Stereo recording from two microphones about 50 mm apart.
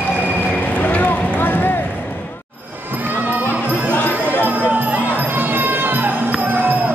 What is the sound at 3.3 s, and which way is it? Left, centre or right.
Music, right.